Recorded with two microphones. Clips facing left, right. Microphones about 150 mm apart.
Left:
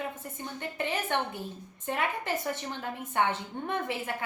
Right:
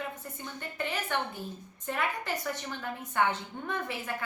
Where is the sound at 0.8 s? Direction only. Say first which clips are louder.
Left 2 dB; 20° left (ahead or behind).